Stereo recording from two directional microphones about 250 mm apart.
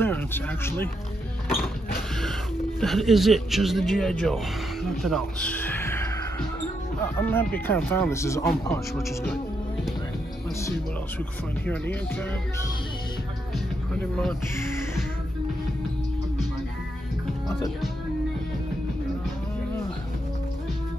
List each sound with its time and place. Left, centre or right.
0.0 s speech: centre
2.8 s a man's voice: centre
11.6 s a man's voice: centre